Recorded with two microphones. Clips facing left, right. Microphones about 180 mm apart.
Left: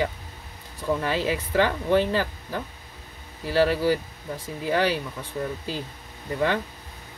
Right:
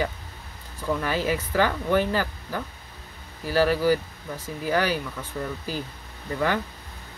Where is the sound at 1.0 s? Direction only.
25° left (ahead or behind).